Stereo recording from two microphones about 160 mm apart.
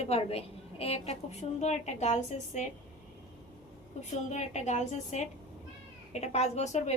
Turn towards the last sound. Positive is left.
turn(degrees=45)  # may be behind; listen again after turning